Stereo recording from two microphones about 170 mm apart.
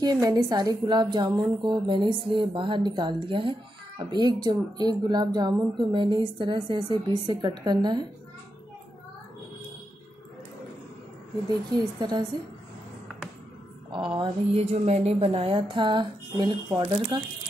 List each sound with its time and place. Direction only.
0.0 s a woman's voice: 20° right (ahead or behind)
12.0 s a woman's voice: 25° right (ahead or behind)
13.9 s a woman's voice: 25° right (ahead or behind)